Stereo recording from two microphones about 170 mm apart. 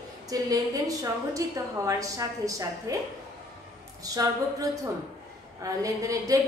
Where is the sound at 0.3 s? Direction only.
20° right (ahead or behind).